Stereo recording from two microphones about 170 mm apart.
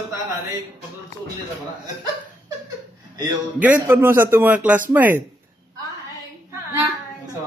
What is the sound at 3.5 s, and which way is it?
A man's voice, 10° right (ahead or behind).